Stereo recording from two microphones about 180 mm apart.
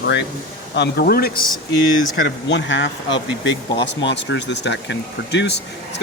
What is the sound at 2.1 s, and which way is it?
Speech, 85° left.